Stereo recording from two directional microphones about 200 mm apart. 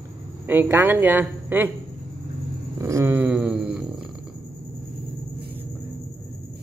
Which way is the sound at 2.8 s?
15° right (ahead or behind).